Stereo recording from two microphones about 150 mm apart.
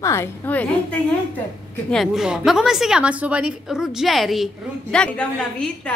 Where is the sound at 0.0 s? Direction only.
15° left (ahead or behind).